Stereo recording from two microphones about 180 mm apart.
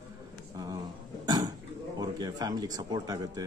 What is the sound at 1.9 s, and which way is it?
Speech, 20° right (ahead or behind).